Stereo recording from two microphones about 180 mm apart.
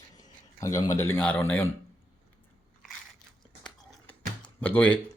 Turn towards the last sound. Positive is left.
turn(degrees=10)  # may be behind; listen again after turning